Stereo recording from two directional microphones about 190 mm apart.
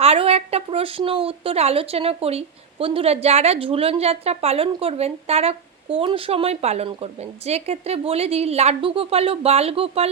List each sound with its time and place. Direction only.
0.0 s speech: 30° right (ahead or behind)